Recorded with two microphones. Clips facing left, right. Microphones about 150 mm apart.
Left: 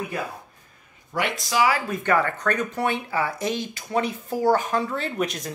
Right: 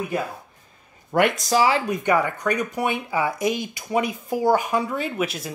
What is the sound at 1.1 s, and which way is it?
Speech, 55° right (ahead or behind).